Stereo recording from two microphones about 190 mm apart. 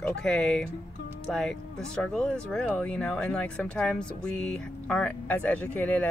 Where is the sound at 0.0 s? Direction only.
5° left (ahead or behind).